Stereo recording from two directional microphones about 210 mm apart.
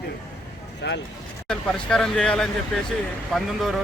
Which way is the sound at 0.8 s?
55° left (ahead or behind).